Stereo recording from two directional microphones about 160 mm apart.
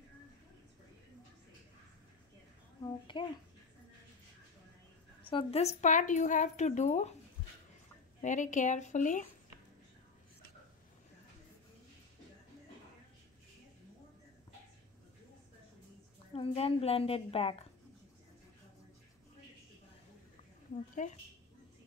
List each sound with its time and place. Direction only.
2.8 s a woman's voice: 30° left (ahead or behind)
5.3 s a woman's voice: 40° left (ahead or behind)
8.2 s a woman's voice: 50° left (ahead or behind)
16.3 s a woman's voice: 35° left (ahead or behind)
20.7 s a woman's voice: 50° left (ahead or behind)